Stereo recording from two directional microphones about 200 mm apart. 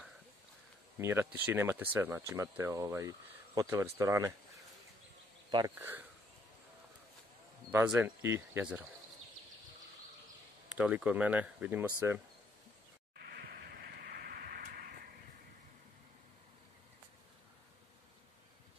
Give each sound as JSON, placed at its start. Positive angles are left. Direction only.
{"t": 0.9, "sound": "speech", "side_deg": -10}
{"t": 5.8, "sound": "speech", "side_deg": -10}
{"t": 7.7, "sound": "speech", "side_deg": -5}
{"t": 10.7, "sound": "speech", "side_deg": -5}
{"t": 13.2, "sound": "vehicle", "side_deg": -50}